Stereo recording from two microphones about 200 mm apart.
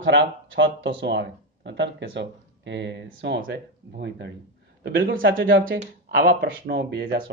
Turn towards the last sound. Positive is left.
turn(degrees=-60)  # may be behind; listen again after turning